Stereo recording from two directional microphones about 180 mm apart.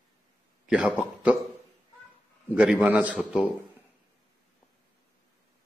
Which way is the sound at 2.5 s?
5° right (ahead or behind).